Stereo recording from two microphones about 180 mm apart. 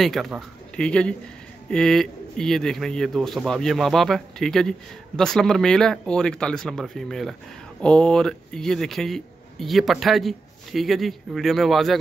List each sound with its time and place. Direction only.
0.0 s a man's voice: centre (ahead or behind)